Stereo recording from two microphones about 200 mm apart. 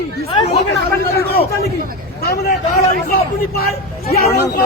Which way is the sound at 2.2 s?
50° left (ahead or behind).